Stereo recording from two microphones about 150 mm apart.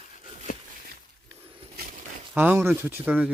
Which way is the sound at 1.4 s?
40° right (ahead or behind).